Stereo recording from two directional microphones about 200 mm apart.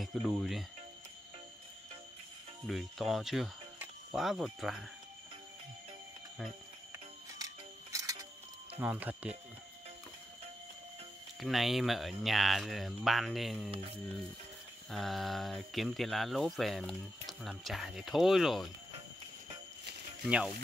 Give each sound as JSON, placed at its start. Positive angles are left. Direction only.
{"t": 0.0, "sound": "speech", "side_deg": 0}
{"t": 2.6, "sound": "speech", "side_deg": 0}
{"t": 7.3, "sound": "music", "side_deg": -15}
{"t": 8.7, "sound": "speech", "side_deg": -10}
{"t": 11.3, "sound": "speech", "side_deg": 0}
{"t": 13.7, "sound": "speech", "side_deg": -30}
{"t": 14.9, "sound": "speech", "side_deg": 0}
{"t": 20.2, "sound": "speech", "side_deg": -5}